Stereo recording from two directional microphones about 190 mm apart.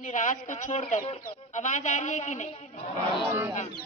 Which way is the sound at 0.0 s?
40° left (ahead or behind).